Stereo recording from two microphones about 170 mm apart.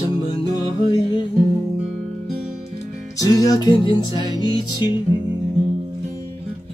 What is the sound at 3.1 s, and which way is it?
Music, 20° left (ahead or behind).